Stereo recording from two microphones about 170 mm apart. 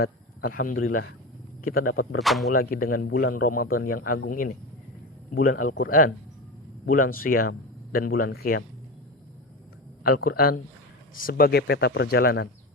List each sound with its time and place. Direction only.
0.0 s a man's voice: 55° left (ahead or behind)
2.2 s speech: centre (ahead or behind)
2.5 s speech: 60° left (ahead or behind); by 3.3 s 80° left
3.4 s speech: 55° left (ahead or behind)
6.8 s speech: 55° left (ahead or behind)
10.0 s speech: 60° left (ahead or behind)